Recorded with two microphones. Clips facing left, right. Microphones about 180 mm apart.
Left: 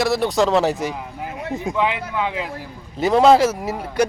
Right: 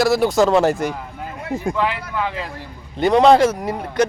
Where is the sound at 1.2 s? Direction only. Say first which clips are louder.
Right 1 dB; 15° left (ahead or behind).